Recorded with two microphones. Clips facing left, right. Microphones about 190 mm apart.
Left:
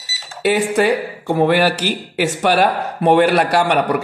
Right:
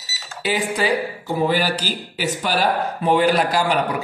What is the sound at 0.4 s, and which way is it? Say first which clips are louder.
Speech: left 6 dB; 70° left (ahead or behind).